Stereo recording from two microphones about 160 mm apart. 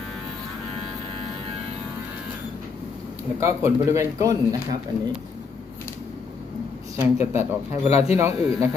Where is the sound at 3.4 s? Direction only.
15° right (ahead or behind).